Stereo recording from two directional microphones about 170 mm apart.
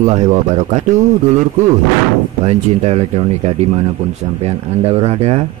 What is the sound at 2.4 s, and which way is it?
Speech, 40° right (ahead or behind).